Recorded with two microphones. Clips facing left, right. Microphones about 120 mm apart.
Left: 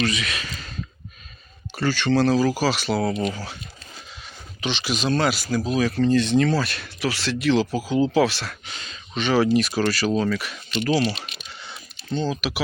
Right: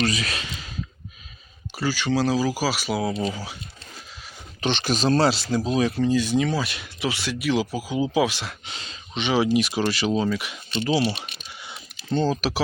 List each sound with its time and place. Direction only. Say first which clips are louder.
0.0 s speech: even; 35° right (ahead or behind)
0.4 s a sound: left 1 dB; 15° right (ahead or behind)
1.7 s speech: left 3 dB; 10° right (ahead or behind)
4.6 s speech: right 3 dB; 45° right (ahead or behind); by 6.0 s 25° right (ahead or behind)
6.0 s speech: left 3 dB; 10° right (ahead or behind); by 9.0 s 30° right (ahead or behind)
9.1 s speech: left 2 dB; 15° right (ahead or behind)
10.7 s speech: left 2 dB; 30° right (ahead or behind)
10.9 s typing: right 1 dB; 15° right (ahead or behind)
12.1 s speech: right 3 dB; 40° right (ahead or behind)